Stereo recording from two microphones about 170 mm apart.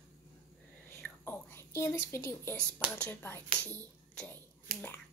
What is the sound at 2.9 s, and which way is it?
Speech, 10° left (ahead or behind).